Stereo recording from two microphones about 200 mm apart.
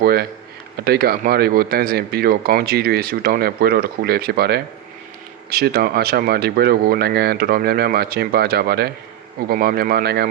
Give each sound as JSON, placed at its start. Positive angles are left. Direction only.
{"t": 0.0, "sound": "speech", "side_deg": -50}